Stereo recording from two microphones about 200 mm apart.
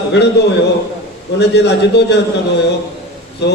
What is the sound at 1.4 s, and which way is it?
Speech, 55° left (ahead or behind).